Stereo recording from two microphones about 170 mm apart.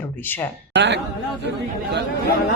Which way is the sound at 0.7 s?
85° right.